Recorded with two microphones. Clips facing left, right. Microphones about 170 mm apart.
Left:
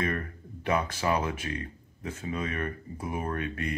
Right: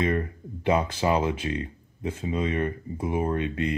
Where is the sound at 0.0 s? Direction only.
25° right (ahead or behind).